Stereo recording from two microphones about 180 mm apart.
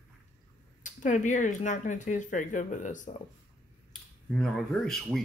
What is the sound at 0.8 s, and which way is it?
Speech, 45° left (ahead or behind).